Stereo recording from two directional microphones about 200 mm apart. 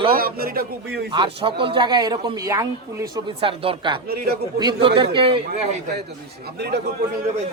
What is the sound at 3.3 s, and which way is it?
Speech, 25° right (ahead or behind).